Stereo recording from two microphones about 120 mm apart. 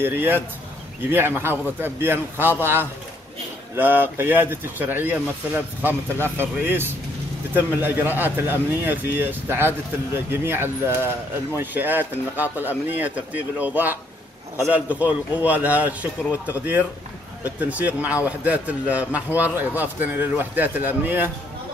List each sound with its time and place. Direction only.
0.0 s speech: 20° right (ahead or behind)